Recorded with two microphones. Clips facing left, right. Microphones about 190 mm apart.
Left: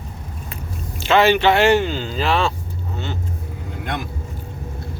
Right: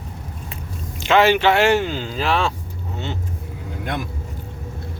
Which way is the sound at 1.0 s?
10° right (ahead or behind).